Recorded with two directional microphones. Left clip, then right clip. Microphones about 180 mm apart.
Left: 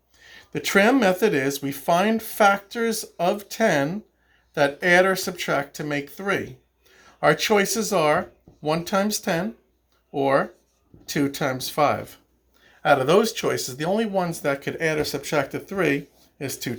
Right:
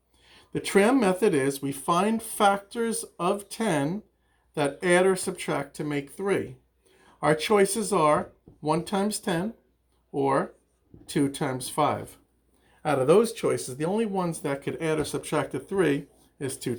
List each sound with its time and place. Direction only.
0.2 s speech: 15° left (ahead or behind)